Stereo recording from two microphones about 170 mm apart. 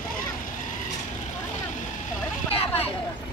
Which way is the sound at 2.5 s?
35° left (ahead or behind).